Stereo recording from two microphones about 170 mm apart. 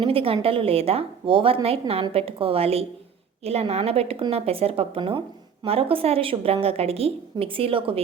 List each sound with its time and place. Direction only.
0.0 s a woman's voice: 35° right (ahead or behind)